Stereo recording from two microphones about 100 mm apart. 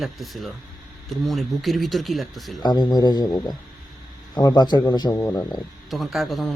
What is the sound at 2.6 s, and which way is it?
A man's voice, 45° left (ahead or behind).